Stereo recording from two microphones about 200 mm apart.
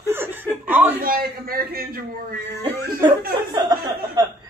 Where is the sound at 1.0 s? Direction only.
45° right (ahead or behind).